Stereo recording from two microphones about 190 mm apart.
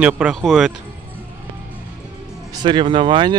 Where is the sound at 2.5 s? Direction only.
25° right (ahead or behind).